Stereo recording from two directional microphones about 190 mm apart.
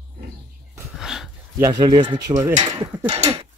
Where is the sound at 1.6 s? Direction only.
20° right (ahead or behind).